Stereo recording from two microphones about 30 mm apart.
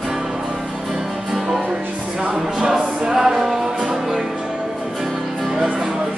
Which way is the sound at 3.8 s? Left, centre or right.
Right.